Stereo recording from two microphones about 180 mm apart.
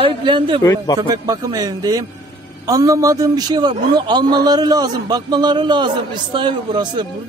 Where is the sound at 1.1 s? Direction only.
20° right (ahead or behind).